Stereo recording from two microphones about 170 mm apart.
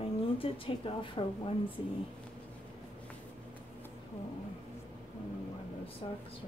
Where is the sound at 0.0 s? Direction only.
30° left (ahead or behind).